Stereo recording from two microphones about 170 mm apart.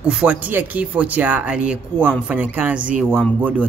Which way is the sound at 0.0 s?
5° right (ahead or behind).